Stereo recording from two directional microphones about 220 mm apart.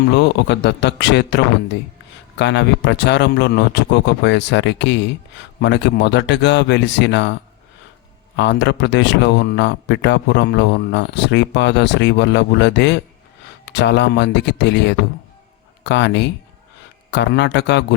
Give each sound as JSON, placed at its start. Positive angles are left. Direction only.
{"t": 0.1, "sound": "speech", "side_deg": 50}
{"t": 8.4, "sound": "speech", "side_deg": 55}